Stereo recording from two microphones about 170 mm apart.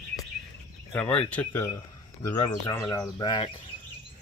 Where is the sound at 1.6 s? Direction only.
20° left (ahead or behind).